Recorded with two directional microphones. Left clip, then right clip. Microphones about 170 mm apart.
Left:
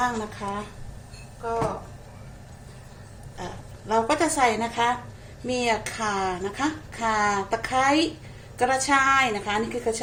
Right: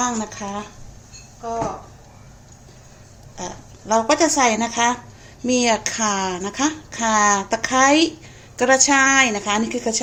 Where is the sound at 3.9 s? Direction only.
65° right (ahead or behind).